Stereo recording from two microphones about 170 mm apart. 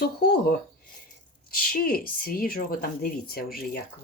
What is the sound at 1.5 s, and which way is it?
Speech, 60° left (ahead or behind).